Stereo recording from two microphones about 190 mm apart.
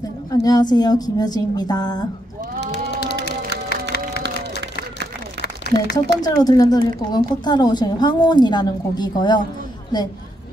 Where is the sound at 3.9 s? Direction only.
55° left (ahead or behind).